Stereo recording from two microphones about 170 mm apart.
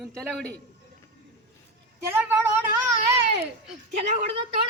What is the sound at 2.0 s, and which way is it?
Speech, 15° right (ahead or behind).